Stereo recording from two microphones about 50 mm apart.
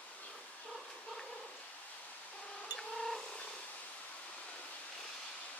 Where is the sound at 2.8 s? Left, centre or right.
Centre.